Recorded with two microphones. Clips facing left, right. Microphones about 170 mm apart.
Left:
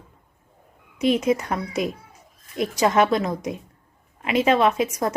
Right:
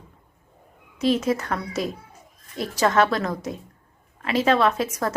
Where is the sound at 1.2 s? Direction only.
15° left (ahead or behind).